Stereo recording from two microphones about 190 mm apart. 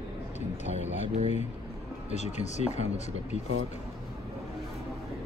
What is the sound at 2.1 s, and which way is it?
Speech, 35° left (ahead or behind).